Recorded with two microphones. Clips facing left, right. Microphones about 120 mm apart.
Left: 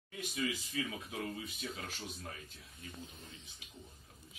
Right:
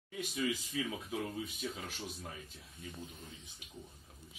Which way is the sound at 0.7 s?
5° right (ahead or behind).